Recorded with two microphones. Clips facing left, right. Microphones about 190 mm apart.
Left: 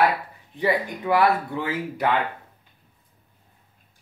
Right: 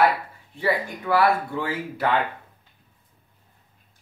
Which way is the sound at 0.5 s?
15° left (ahead or behind).